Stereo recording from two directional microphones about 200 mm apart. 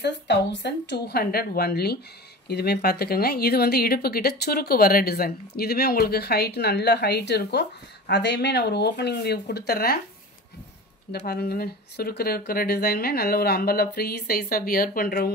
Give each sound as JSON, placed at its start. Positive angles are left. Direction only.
{"t": 0.0, "sound": "speech", "side_deg": 60}
{"t": 11.1, "sound": "speech", "side_deg": 55}